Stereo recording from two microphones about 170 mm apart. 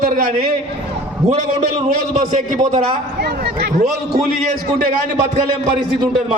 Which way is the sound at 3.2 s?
70° right (ahead or behind).